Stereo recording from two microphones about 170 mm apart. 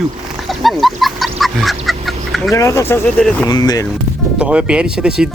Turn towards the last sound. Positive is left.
turn(degrees=-5)  # may be behind; listen again after turning